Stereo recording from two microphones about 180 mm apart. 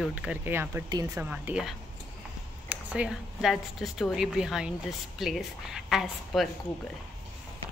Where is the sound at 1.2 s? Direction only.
5° right (ahead or behind).